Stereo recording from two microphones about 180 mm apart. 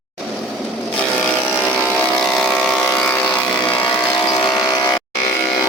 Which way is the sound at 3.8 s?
25° left (ahead or behind).